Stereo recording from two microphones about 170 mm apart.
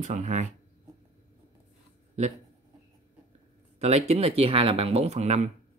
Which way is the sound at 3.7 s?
40° right (ahead or behind).